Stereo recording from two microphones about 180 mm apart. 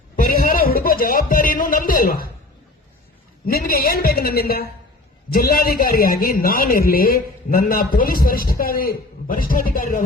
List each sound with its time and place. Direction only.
0.2 s music: 55° left (ahead or behind)
3.4 s a woman's voice: 55° left (ahead or behind)